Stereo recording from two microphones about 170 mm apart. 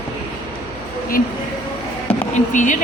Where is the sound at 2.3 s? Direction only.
45° left (ahead or behind).